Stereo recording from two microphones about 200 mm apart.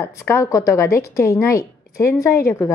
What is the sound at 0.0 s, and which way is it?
A woman's voice, 15° left (ahead or behind).